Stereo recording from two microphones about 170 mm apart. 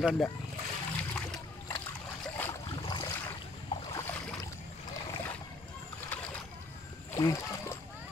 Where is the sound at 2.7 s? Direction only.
25° left (ahead or behind).